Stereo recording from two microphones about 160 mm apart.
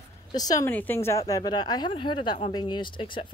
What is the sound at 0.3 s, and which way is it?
Speech, 25° left (ahead or behind).